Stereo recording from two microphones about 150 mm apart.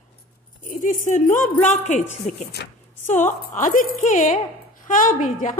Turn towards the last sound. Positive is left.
turn(degrees=60)  # may be behind; listen again after turning